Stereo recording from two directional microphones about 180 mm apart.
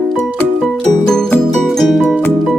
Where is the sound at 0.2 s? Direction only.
5° left (ahead or behind).